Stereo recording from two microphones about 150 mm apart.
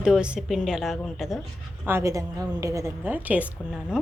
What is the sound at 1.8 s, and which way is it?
A woman's voice, 20° right (ahead or behind).